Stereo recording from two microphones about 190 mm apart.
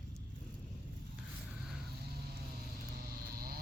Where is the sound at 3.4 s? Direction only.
50° right (ahead or behind).